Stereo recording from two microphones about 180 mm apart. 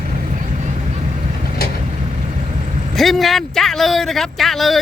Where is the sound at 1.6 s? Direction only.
60° left (ahead or behind).